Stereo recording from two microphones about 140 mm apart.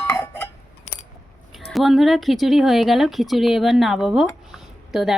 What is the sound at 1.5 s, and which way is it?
Speech, centre (ahead or behind).